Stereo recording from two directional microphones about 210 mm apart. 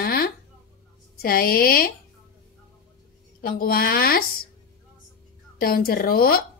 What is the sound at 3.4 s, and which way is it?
Speech, 45° left (ahead or behind).